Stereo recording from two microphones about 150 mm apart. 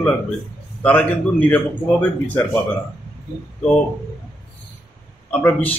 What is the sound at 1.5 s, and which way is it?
Speech, 10° left (ahead or behind).